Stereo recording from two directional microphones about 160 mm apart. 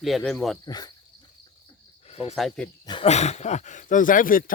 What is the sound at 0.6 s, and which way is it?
Speech, 25° left (ahead or behind).